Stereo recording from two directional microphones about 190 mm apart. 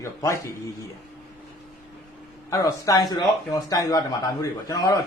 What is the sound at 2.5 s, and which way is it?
A man's voice, 20° left (ahead or behind).